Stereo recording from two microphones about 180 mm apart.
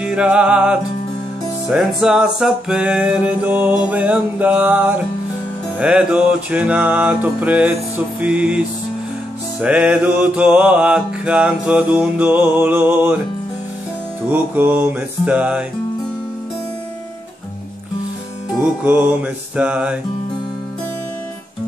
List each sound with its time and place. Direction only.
0.0 s music: 5° right (ahead or behind)
1.7 s mantra: 5° right (ahead or behind)
14.3 s mantra: 10° right (ahead or behind)
18.5 s mantra: 10° right (ahead or behind)